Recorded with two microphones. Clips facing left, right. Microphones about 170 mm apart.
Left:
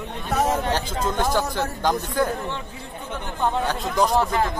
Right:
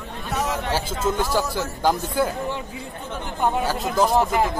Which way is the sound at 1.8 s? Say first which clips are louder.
Right 2 dB; 5° right (ahead or behind).